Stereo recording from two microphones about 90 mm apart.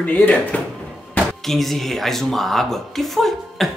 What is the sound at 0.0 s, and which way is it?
Speech, 20° left (ahead or behind).